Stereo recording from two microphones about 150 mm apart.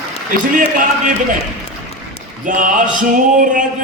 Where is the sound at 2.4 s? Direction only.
60° right (ahead or behind).